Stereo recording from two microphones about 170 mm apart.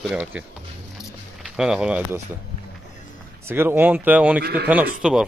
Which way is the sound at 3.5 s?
10° right (ahead or behind).